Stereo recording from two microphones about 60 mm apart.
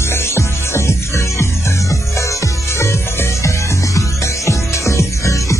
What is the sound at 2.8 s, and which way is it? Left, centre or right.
Music, left.